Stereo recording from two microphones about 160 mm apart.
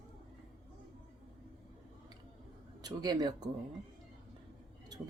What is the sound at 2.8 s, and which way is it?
Speech, 25° right (ahead or behind).